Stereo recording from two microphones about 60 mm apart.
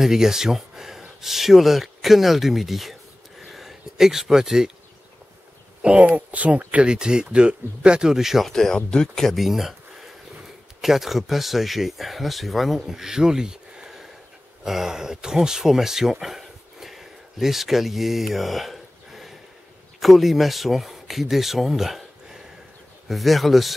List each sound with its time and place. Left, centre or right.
0.0 s speech: centre
5.8 s speech: right
8.5 s speech: centre